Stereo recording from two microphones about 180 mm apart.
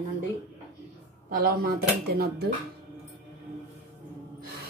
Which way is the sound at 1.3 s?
55° right (ahead or behind).